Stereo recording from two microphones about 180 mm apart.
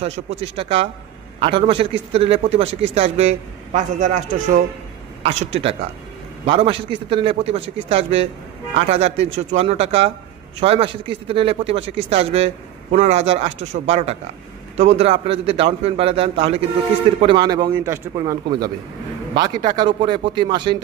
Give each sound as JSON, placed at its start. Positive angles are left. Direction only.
{"t": 0.0, "sound": "a man's voice", "side_deg": -35}